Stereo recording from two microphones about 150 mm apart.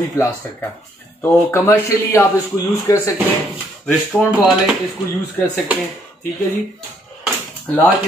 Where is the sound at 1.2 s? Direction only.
15° left (ahead or behind).